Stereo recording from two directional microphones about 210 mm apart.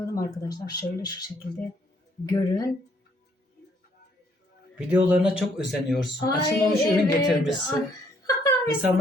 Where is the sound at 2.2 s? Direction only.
20° left (ahead or behind).